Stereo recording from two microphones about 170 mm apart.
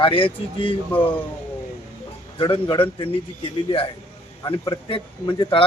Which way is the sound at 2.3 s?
25° left (ahead or behind).